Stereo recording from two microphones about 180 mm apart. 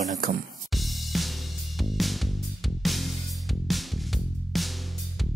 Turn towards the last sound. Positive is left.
turn(degrees=0)  # may be behind; listen again after turning